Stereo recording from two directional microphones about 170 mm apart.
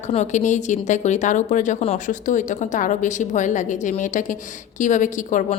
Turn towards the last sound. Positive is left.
turn(degrees=50)  # may be behind; listen again after turning